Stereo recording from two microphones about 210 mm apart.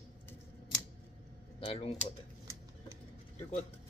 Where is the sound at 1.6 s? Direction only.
30° left (ahead or behind).